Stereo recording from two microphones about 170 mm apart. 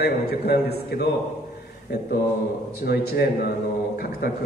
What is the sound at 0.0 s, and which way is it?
A man's voice, 70° left (ahead or behind).